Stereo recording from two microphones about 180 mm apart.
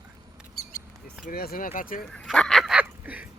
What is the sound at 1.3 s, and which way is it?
Speech, 55° left (ahead or behind).